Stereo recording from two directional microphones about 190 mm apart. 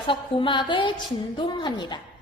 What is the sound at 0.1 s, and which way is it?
A woman's voice, 25° left (ahead or behind).